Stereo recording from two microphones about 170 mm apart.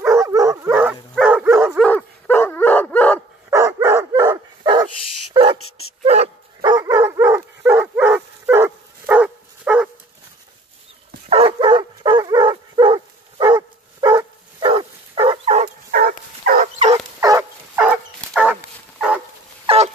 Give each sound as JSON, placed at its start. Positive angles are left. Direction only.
{"t": 0.0, "sound": "dog", "side_deg": -15}
{"t": 1.8, "sound": "dog", "side_deg": 5}
{"t": 3.4, "sound": "dog", "side_deg": -15}
{"t": 6.0, "sound": "dog", "side_deg": -40}
{"t": 6.6, "sound": "bow-wow", "side_deg": -20}
{"t": 11.2, "sound": "bow-wow", "side_deg": -35}
{"t": 15.9, "sound": "dog", "side_deg": -60}
{"t": 16.9, "sound": "dog", "side_deg": -20}
{"t": 17.7, "sound": "dog", "side_deg": -5}
{"t": 19.6, "sound": "a sound", "side_deg": -35}